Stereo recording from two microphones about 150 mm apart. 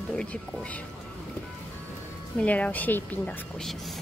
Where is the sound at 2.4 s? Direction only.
10° left (ahead or behind).